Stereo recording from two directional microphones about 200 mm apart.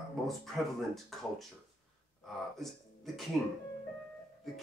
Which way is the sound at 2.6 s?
Centre (ahead or behind).